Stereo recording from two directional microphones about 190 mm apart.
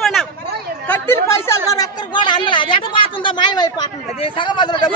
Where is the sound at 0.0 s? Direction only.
Centre (ahead or behind).